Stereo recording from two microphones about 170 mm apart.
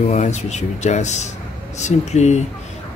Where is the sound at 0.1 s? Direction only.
45° left (ahead or behind).